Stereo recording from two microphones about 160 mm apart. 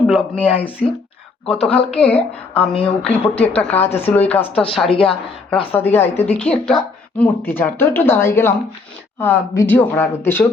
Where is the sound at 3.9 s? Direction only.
40° left (ahead or behind).